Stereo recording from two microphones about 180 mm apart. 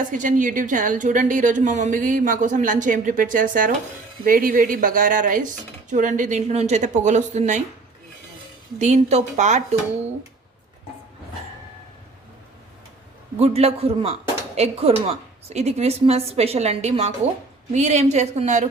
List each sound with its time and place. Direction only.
0.0 s a woman's voice: 45° right (ahead or behind)
8.8 s a woman's voice: 40° right (ahead or behind)
13.4 s a woman's voice: 35° right (ahead or behind)